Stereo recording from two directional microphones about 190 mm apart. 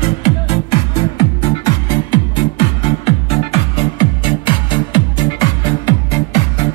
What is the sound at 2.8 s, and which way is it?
Music, 30° left (ahead or behind).